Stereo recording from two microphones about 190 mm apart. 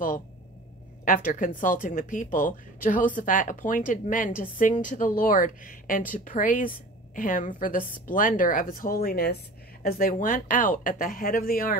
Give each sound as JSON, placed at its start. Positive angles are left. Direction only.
{"t": 1.0, "sound": "speech", "side_deg": 45}